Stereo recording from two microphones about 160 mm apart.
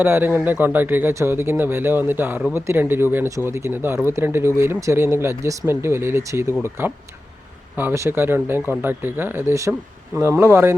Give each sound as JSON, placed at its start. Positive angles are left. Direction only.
{"t": 0.0, "sound": "speech", "side_deg": -15}